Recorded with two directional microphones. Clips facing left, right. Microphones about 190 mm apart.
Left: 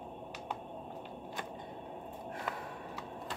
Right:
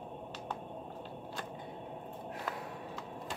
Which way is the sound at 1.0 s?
15° left (ahead or behind).